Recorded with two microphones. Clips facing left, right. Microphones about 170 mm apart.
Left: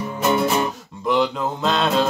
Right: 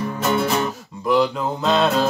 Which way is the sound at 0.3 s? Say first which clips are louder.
Left 1 dB; 20° left (ahead or behind).